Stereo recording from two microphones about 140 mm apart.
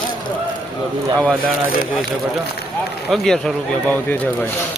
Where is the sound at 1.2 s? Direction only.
5° left (ahead or behind).